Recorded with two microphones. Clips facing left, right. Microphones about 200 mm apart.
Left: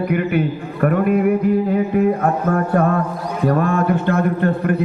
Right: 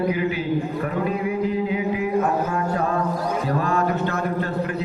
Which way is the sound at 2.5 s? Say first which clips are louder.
Left 7 dB; 55° left (ahead or behind).